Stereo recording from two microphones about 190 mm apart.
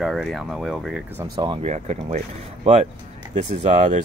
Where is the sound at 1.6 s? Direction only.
35° right (ahead or behind).